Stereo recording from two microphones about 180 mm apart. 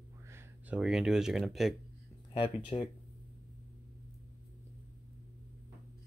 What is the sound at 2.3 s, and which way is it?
Speech, 30° left (ahead or behind).